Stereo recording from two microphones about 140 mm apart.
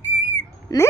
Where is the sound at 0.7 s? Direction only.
25° left (ahead or behind).